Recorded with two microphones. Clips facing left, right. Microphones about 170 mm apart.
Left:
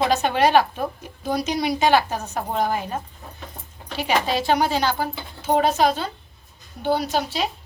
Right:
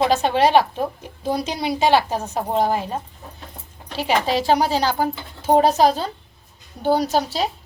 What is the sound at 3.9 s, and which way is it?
A woman's voice, 35° right (ahead or behind).